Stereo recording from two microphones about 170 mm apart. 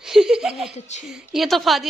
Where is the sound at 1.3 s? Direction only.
Centre (ahead or behind).